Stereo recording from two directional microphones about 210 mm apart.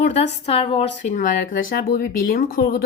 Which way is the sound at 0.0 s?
30° left (ahead or behind).